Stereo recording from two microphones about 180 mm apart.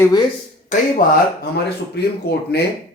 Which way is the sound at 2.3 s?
60° left (ahead or behind).